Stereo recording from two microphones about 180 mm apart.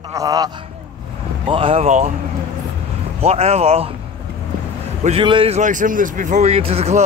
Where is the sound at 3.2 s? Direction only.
35° right (ahead or behind).